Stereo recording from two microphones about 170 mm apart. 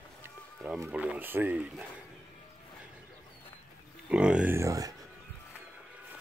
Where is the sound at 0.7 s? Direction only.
10° right (ahead or behind).